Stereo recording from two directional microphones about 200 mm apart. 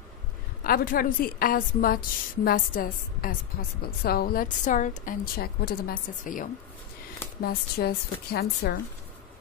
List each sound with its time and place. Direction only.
0.7 s a woman's voice: 45° left (ahead or behind)